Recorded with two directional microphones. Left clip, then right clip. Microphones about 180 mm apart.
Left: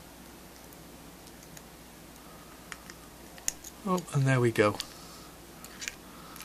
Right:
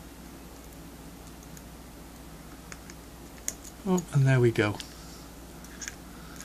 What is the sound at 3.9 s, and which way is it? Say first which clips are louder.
Speech: right 1 dB; 20° left (ahead or behind).